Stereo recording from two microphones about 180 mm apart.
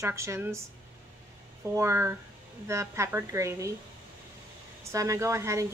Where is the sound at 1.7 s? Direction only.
15° right (ahead or behind).